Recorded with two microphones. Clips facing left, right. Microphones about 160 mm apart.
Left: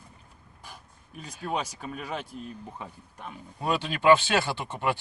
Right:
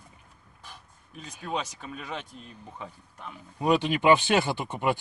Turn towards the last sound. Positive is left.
turn(degrees=-15)  # may be behind; listen again after turning